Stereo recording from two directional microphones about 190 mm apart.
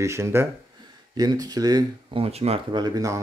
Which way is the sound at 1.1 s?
20° right (ahead or behind).